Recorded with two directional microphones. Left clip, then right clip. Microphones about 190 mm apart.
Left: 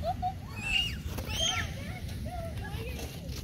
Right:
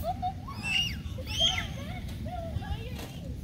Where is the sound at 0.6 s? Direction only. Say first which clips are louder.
Right 1 dB; 15° left (ahead or behind).